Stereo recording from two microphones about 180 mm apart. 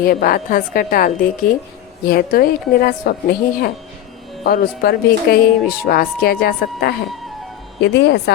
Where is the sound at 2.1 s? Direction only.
55° left (ahead or behind).